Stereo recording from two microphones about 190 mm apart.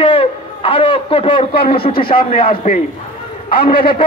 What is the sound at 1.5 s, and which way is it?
Speech, 55° left (ahead or behind).